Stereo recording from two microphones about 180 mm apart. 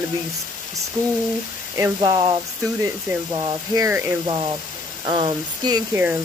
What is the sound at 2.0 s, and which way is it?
Speech, 25° right (ahead or behind).